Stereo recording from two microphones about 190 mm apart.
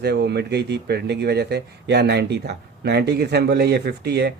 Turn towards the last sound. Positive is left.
turn(degrees=-60)  # may be behind; listen again after turning